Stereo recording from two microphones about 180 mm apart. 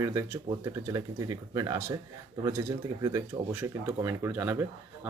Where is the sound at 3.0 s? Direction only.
20° right (ahead or behind).